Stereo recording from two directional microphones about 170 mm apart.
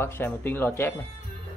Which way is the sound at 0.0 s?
15° left (ahead or behind).